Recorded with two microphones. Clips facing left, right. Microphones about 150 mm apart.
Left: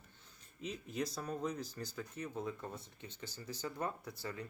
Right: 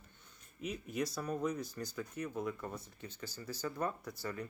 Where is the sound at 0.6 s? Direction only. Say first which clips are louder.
Right 2 dB; 30° left (ahead or behind).